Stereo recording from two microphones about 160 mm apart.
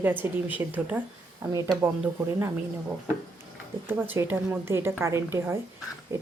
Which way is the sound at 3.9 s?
10° right (ahead or behind).